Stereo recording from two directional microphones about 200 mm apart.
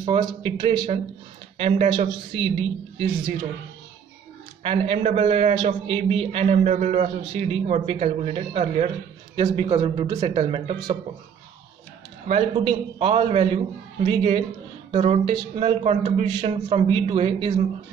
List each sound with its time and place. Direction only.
0.0 s a man's voice: 20° right (ahead or behind)
4.6 s speech: 30° right (ahead or behind)
9.3 s a man's voice: 20° right (ahead or behind)
10.0 s a man's voice: 15° right (ahead or behind)
12.3 s a man's voice: 30° right (ahead or behind)